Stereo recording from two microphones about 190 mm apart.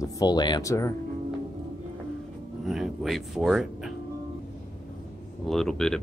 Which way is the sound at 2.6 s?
Centre (ahead or behind).